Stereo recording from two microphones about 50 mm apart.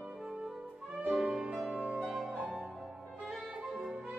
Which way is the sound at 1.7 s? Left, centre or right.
Right.